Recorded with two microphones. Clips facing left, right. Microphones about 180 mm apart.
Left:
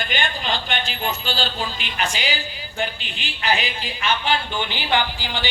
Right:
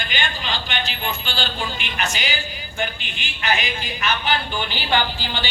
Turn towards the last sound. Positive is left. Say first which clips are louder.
# even
turn(degrees=15)  # may be behind; listen again after turning